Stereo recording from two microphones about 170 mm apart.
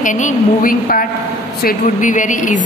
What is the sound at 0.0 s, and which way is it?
A woman's voice, 50° left (ahead or behind).